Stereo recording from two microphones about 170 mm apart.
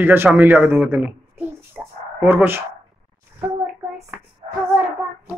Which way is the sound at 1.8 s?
15° right (ahead or behind).